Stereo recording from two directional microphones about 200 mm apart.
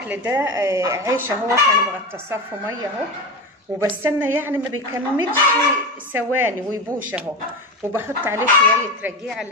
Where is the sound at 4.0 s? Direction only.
10° right (ahead or behind).